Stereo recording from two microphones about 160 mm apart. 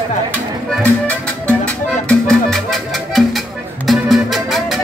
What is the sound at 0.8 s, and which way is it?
Music, 10° left (ahead or behind).